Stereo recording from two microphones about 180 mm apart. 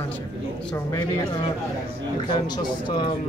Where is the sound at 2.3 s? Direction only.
25° left (ahead or behind).